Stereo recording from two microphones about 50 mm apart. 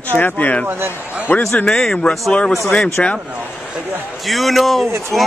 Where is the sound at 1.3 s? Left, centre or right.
Left.